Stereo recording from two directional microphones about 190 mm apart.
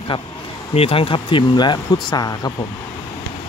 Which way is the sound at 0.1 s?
30° left (ahead or behind).